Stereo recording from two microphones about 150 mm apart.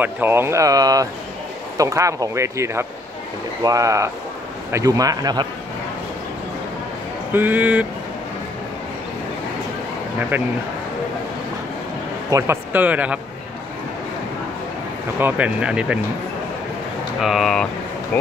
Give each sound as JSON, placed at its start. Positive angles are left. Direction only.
{"t": 0.0, "sound": "speech", "side_deg": -15}
{"t": 7.3, "sound": "speech", "side_deg": -10}
{"t": 10.3, "sound": "speech", "side_deg": -10}
{"t": 12.3, "sound": "speech", "side_deg": -20}
{"t": 15.1, "sound": "speech", "side_deg": -10}
{"t": 17.2, "sound": "speech", "side_deg": 0}
{"t": 18.1, "sound": "speech", "side_deg": 10}